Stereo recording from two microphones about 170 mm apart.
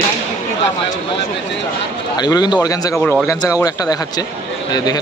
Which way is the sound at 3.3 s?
20° left (ahead or behind).